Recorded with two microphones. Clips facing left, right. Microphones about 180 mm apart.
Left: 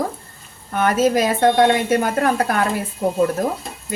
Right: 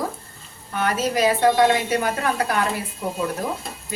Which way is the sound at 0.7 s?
50° left (ahead or behind).